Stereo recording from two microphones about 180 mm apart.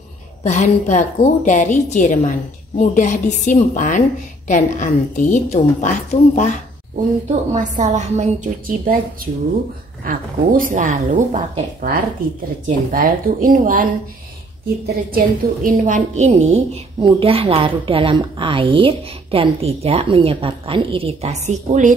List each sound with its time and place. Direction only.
0.4 s a woman's voice: 40° left (ahead or behind)
7.5 s speech: 40° right (ahead or behind)
15.0 s a woman's voice: 50° right (ahead or behind)